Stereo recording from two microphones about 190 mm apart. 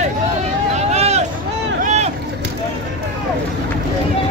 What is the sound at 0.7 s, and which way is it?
Vehicle, 35° right (ahead or behind).